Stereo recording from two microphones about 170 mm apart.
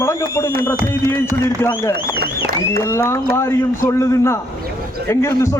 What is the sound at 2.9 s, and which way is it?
A man's voice, 15° left (ahead or behind).